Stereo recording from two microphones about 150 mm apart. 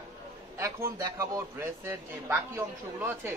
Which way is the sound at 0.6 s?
20° right (ahead or behind).